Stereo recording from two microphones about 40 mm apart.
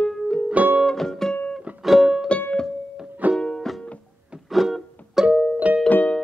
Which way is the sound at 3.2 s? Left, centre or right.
Right.